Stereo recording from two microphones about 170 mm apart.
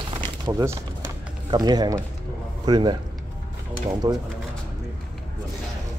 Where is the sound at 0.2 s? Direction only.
20° right (ahead or behind).